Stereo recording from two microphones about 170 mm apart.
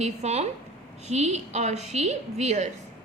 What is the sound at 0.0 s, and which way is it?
A woman's voice, 40° right (ahead or behind).